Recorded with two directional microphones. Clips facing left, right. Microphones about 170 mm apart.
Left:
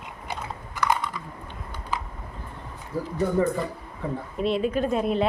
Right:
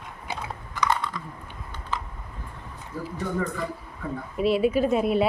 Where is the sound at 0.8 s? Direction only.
10° left (ahead or behind).